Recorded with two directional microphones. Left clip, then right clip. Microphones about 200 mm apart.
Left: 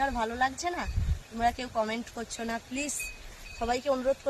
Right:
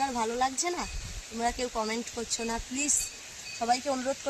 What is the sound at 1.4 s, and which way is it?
Speech, 20° left (ahead or behind).